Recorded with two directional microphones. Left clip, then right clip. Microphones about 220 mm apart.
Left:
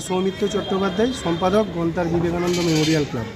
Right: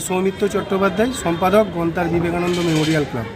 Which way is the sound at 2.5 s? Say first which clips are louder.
Right 1 dB; 45° left (ahead or behind).